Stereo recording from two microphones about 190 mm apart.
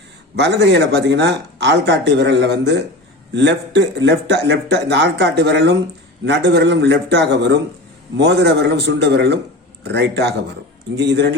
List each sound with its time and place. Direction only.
0.3 s speech: 65° right (ahead or behind)